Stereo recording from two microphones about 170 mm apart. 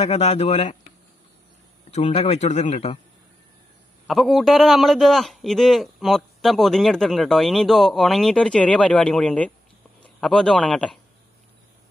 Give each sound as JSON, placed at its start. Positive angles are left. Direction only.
{"t": 0.0, "sound": "speech", "side_deg": 40}
{"t": 1.9, "sound": "speech", "side_deg": 40}
{"t": 4.1, "sound": "a man's voice", "side_deg": 0}